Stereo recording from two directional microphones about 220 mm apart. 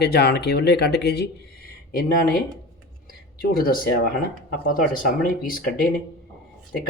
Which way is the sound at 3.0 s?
40° left (ahead or behind).